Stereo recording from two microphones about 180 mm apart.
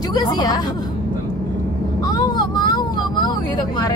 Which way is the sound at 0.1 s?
20° left (ahead or behind).